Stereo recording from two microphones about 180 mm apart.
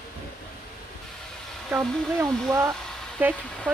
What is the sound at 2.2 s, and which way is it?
Speech, 15° right (ahead or behind).